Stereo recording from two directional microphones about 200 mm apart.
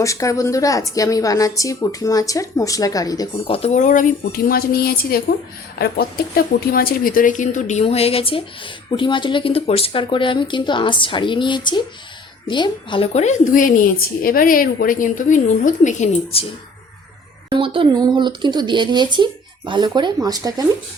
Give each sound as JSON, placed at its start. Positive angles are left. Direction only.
{"t": 0.0, "sound": "a woman's voice", "side_deg": 15}
{"t": 17.5, "sound": "speech", "side_deg": -25}